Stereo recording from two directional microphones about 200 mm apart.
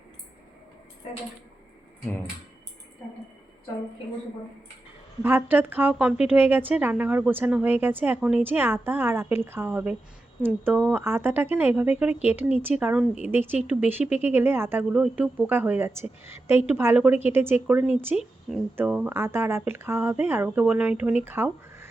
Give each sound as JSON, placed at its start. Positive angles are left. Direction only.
{"t": 5.2, "sound": "a woman's voice", "side_deg": -10}